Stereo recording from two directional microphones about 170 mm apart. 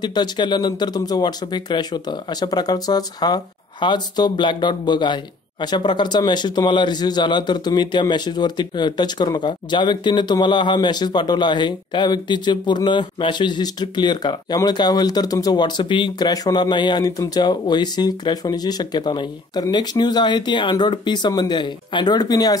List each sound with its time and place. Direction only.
0.0 s speech: 25° left (ahead or behind)